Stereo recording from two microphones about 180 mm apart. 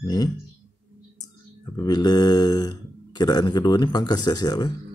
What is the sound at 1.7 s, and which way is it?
Speech, 20° left (ahead or behind).